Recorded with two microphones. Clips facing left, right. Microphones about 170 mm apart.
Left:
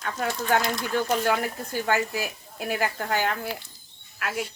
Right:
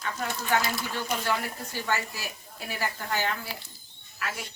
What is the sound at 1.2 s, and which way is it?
A woman's voice, 55° left (ahead or behind).